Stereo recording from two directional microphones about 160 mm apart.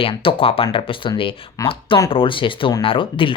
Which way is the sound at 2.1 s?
35° left (ahead or behind).